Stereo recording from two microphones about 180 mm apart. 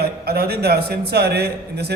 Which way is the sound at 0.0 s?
60° right (ahead or behind).